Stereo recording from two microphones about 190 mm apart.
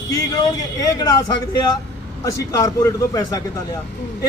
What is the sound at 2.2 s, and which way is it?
A man's voice, 15° left (ahead or behind).